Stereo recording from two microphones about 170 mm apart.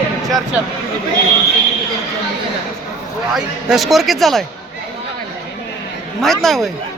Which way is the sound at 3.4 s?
Centre (ahead or behind).